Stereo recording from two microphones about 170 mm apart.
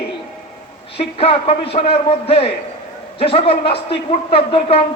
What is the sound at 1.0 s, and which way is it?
A man's voice, 35° left (ahead or behind).